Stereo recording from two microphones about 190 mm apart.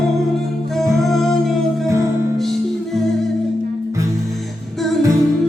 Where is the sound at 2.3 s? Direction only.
Centre (ahead or behind).